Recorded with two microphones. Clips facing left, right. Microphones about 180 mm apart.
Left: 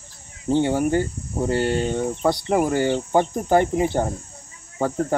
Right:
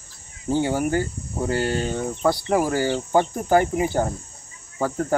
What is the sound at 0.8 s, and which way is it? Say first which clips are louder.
Speech: left 2 dB; 25° left (ahead or behind).